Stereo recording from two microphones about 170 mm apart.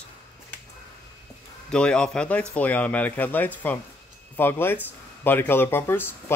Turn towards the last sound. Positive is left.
turn(degrees=15)  # may be behind; listen again after turning